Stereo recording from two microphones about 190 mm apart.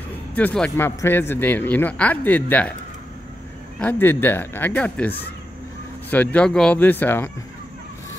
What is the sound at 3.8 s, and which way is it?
Speech, 10° left (ahead or behind).